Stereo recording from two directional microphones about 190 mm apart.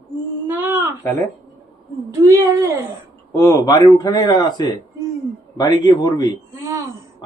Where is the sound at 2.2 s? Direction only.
15° right (ahead or behind).